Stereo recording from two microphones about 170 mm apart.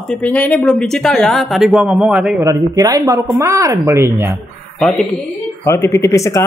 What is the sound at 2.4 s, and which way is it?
Speech, 20° right (ahead or behind).